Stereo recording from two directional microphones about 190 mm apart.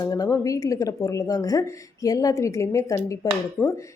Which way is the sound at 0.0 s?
20° left (ahead or behind).